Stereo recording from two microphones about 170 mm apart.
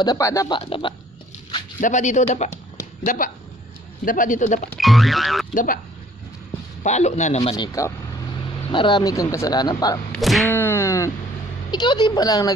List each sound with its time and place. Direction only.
0.0 s speech: 20° left (ahead or behind)
0.6 s speech: 30° left (ahead or behind)
1.8 s a man's voice: 45° left (ahead or behind)
4.7 s speech: centre (ahead or behind)
5.5 s speech: 50° left (ahead or behind)
6.8 s a man's voice: 40° left (ahead or behind)
7.5 s speech: 20° left (ahead or behind)
10.1 s speech: centre (ahead or behind)
10.5 s a sound: 15° left (ahead or behind)
11.7 s speech: 25° left (ahead or behind)